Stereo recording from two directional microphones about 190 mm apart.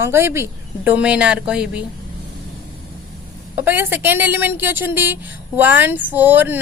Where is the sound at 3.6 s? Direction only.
10° right (ahead or behind).